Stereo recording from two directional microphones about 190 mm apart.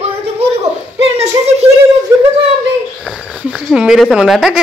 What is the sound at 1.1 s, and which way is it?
Speech, 35° right (ahead or behind).